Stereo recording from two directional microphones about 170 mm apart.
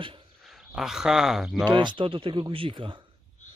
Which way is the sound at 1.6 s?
30° right (ahead or behind).